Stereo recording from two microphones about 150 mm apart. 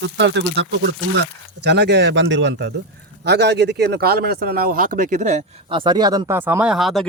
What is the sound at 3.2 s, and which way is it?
Speech, 90° right.